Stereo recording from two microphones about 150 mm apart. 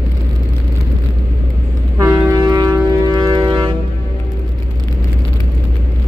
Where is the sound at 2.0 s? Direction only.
20° right (ahead or behind).